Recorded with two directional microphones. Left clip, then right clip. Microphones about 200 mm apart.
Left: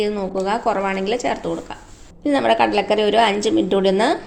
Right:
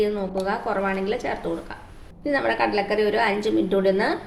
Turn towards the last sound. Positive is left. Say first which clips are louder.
# left 4 dB
turn(degrees=40)  # may be behind; listen again after turning